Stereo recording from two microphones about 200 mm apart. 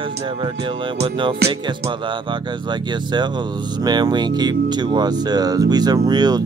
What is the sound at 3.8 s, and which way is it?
Speech, 20° right (ahead or behind).